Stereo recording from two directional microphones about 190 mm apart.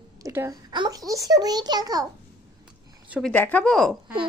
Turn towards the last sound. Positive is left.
turn(degrees=5)  # may be behind; listen again after turning